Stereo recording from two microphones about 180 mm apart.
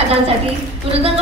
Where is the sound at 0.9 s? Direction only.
35° right (ahead or behind).